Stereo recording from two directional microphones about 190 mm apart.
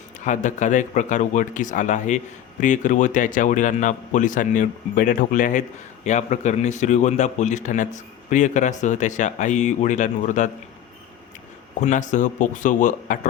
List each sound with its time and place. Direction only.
0.3 s speech: 40° left (ahead or behind)
11.8 s speech: 40° left (ahead or behind)